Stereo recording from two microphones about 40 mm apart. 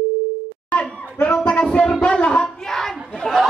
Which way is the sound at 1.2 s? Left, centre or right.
Left.